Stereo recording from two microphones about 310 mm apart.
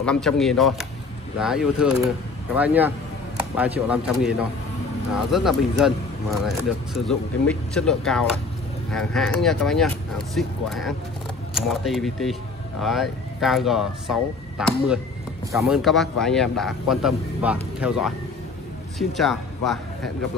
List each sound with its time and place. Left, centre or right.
0.0 s speech: centre